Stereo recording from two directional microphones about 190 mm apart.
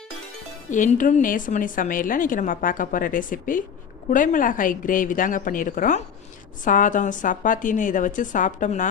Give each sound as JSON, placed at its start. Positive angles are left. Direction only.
{"t": 0.7, "sound": "a woman's voice", "side_deg": 40}